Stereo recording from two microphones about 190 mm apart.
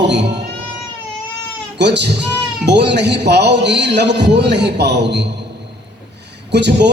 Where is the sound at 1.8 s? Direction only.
65° right (ahead or behind).